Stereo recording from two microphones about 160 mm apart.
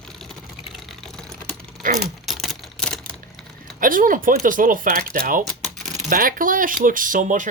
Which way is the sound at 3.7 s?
60° right (ahead or behind).